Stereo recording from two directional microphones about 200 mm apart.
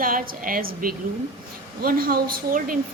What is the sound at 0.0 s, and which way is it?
A woman's voice, 45° right (ahead or behind).